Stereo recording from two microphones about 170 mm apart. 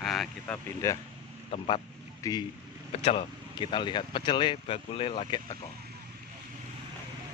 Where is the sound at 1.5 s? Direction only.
30° left (ahead or behind).